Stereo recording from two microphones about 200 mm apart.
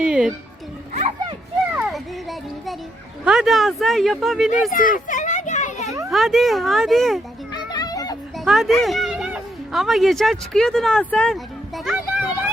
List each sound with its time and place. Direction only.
0.0 s speech: 5° right (ahead or behind)
1.7 s children playing: 5° right (ahead or behind)
3.2 s speech: centre (ahead or behind)
4.7 s children playing: 45° left (ahead or behind)
6.1 s speech: centre (ahead or behind)
7.5 s children playing: 20° left (ahead or behind)
8.4 s speech: centre (ahead or behind)
11.9 s a sound: 5° right (ahead or behind)